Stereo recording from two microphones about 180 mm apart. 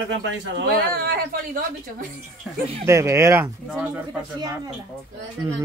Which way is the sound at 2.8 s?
15° right (ahead or behind).